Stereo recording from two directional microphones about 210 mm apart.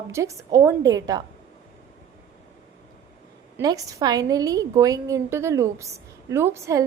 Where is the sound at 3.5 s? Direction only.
15° right (ahead or behind).